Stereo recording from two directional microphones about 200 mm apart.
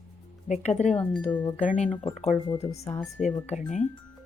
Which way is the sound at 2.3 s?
20° left (ahead or behind).